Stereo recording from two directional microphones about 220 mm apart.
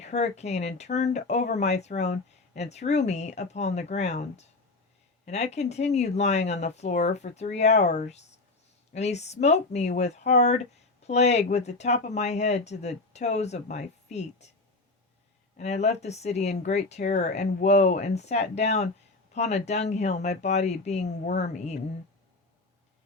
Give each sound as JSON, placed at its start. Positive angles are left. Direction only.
{"t": 0.0, "sound": "speech", "side_deg": 30}
{"t": 15.5, "sound": "speech", "side_deg": 30}